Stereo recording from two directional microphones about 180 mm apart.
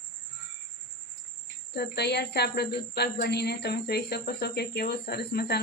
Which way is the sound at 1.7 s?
65° left (ahead or behind).